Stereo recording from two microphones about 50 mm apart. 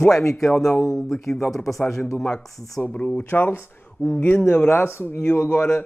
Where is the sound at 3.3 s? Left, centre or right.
Left.